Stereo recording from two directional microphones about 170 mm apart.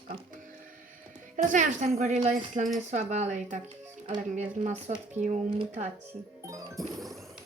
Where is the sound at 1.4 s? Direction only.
50° right (ahead or behind).